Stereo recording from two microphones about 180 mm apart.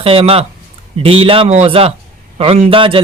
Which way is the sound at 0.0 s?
30° right (ahead or behind).